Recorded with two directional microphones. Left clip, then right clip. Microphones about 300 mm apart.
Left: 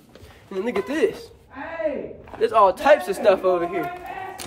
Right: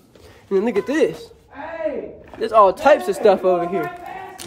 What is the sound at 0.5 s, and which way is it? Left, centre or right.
Speech, right.